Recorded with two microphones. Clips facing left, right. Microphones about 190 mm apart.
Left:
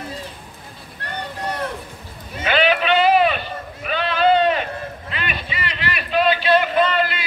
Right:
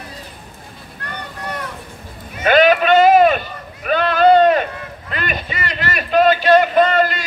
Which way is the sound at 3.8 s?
45° right (ahead or behind).